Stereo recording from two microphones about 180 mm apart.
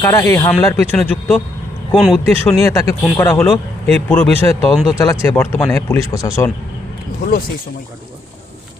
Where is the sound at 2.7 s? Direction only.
15° left (ahead or behind).